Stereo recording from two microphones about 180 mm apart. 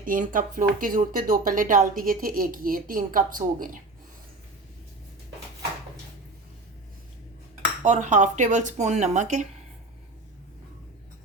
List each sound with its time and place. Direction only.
0.0 s speech: 50° right (ahead or behind)
7.8 s speech: 40° right (ahead or behind)